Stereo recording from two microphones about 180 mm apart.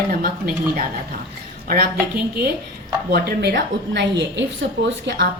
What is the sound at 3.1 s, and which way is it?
A woman's voice, 65° right (ahead or behind).